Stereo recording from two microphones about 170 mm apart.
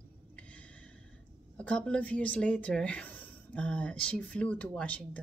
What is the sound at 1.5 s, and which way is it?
Speech, 5° left (ahead or behind).